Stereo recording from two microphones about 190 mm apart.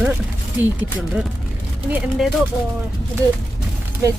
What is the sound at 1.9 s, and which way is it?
Speech, centre (ahead or behind).